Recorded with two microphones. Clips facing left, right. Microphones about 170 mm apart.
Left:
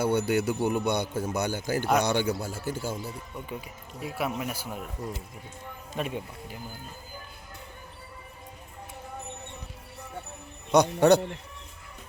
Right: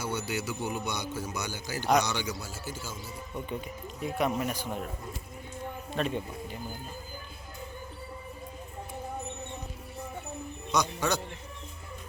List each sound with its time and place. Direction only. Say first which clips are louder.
0.0 s a man's voice: left 8 dB; 55° left (ahead or behind)
3.5 s speech: right 2 dB; 5° left (ahead or behind)
6.0 s speech: right 1 dB; 10° left (ahead or behind)
10.7 s a man's voice: left 10 dB; 60° left (ahead or behind)